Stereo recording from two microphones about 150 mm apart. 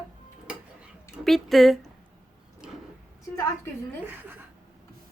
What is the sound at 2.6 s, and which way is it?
Vehicle, 5° right (ahead or behind).